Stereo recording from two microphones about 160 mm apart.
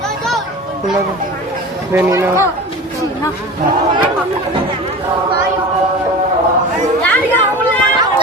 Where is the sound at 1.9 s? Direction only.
20° right (ahead or behind).